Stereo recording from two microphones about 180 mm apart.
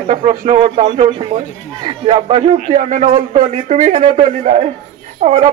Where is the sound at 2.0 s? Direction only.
35° right (ahead or behind).